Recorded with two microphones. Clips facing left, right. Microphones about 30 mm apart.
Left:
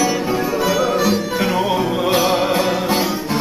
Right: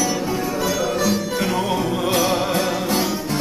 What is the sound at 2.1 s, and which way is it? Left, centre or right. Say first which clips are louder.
Music: left 3 dB; centre.